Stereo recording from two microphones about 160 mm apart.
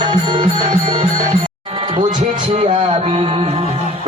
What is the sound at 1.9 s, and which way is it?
Music, 30° right (ahead or behind).